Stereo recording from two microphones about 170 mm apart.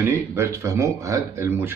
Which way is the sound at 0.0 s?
15° right (ahead or behind).